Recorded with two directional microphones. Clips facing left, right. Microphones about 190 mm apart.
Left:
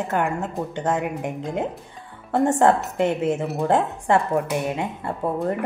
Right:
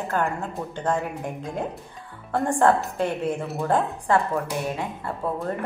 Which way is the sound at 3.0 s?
20° left (ahead or behind).